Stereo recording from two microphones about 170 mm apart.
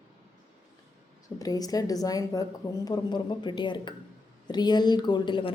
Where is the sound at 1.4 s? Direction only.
20° left (ahead or behind).